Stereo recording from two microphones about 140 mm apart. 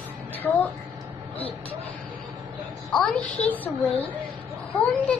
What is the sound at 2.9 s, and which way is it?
Speech, 10° left (ahead or behind).